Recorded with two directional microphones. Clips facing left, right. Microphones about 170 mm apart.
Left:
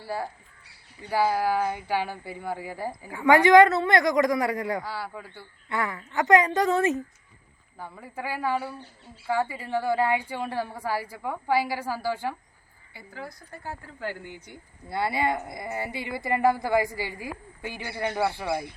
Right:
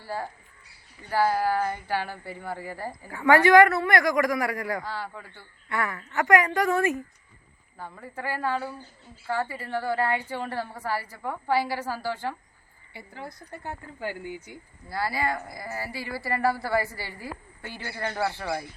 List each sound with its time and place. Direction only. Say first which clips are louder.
1.1 s a woman's voice: even; 15° left (ahead or behind)
7.8 s a woman's voice: even; 10° left (ahead or behind)
12.9 s speech: even; 25° right (ahead or behind)
14.0 s speech: right 2 dB; 15° right (ahead or behind)
14.8 s a woman's voice: left 2 dB; 25° left (ahead or behind)